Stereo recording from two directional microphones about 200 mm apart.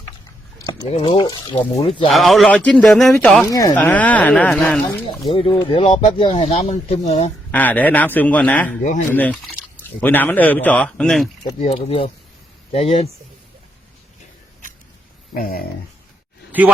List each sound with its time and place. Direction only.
0.6 s speech: 25° left (ahead or behind)
2.0 s speech: centre (ahead or behind)
3.4 s speech: 15° left (ahead or behind)
5.3 s speech: 25° left (ahead or behind)
7.5 s speech: 10° left (ahead or behind)
8.8 s speech: 40° left (ahead or behind)
9.1 s speech: 5° left (ahead or behind)
11.6 s speech: 30° left (ahead or behind)
15.4 s speech: 45° left (ahead or behind)
16.5 s a sound: 10° right (ahead or behind)